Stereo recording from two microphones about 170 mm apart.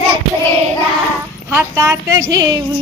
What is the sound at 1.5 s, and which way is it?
A woman's voice, 15° right (ahead or behind).